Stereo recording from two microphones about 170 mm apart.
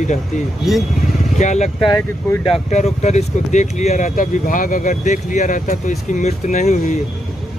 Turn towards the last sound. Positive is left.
turn(degrees=45)  # may be behind; listen again after turning